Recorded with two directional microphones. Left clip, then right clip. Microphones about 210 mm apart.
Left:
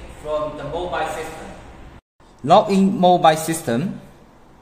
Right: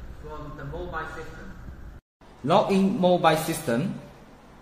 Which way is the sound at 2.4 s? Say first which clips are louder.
Left 7 dB; 55° left (ahead or behind).